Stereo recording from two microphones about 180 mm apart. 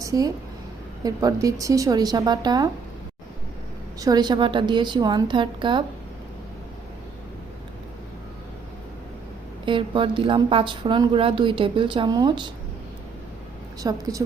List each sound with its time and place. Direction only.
0.0 s a sound: 20° right (ahead or behind)
1.0 s a woman's voice: 20° right (ahead or behind)
4.0 s a woman's voice: 20° right (ahead or behind)
9.6 s a woman's voice: 25° right (ahead or behind)
13.8 s a woman's voice: 20° right (ahead or behind)